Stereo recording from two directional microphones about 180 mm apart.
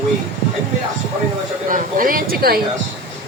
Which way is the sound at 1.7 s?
50° right (ahead or behind).